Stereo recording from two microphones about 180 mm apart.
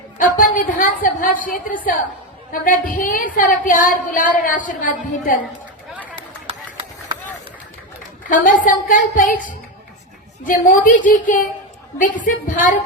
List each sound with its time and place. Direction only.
0.2 s a woman's voice: 50° left (ahead or behind)
6.5 s a sound: 30° right (ahead or behind)
8.3 s a woman's voice: 45° left (ahead or behind)